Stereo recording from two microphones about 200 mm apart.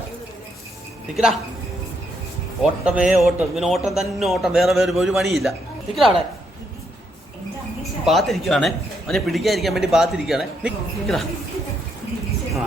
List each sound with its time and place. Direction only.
1.1 s a man's voice: centre (ahead or behind)
2.8 s a man's voice: 5° right (ahead or behind)
8.0 s a man's voice: centre (ahead or behind)